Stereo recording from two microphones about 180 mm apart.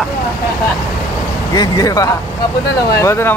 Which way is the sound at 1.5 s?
20° left (ahead or behind).